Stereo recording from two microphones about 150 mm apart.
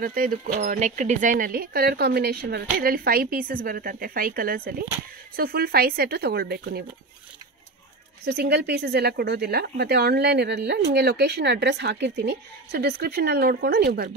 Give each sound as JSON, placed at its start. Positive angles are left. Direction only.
{"t": 0.0, "sound": "speech", "side_deg": -70}
{"t": 8.3, "sound": "speech", "side_deg": -90}